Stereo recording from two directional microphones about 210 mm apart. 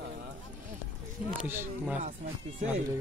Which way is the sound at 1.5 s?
10° right (ahead or behind).